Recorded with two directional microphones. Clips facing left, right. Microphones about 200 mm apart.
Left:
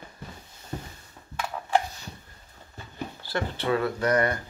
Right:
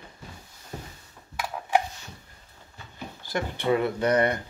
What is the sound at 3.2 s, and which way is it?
Speech, 15° right (ahead or behind).